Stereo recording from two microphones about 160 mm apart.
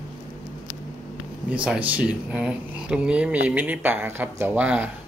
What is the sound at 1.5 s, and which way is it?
Speech, 5° right (ahead or behind).